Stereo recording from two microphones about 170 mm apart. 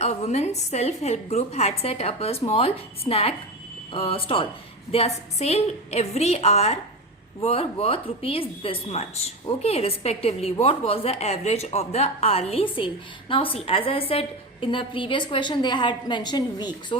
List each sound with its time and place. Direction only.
0.0 s a woman's voice: 40° left (ahead or behind); by 17.0 s 25° left (ahead or behind)